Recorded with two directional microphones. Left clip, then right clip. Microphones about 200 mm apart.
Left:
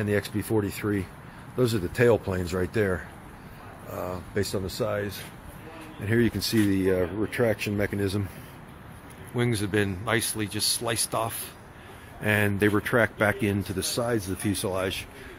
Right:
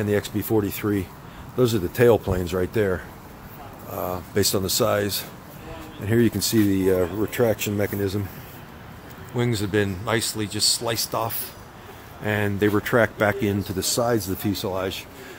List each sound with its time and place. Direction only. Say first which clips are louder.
0.0 s speech: right 4 dB; centre (ahead or behind); by 5.2 s 20° right (ahead or behind)
6.0 s speech: right 4 dB; 5° right (ahead or behind)
9.3 s speech: right 3 dB; centre (ahead or behind)
14.5 s speech: right 1 dB; 5° left (ahead or behind)